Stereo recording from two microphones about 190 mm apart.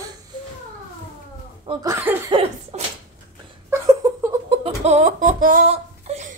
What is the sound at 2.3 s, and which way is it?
Cough, 25° right (ahead or behind).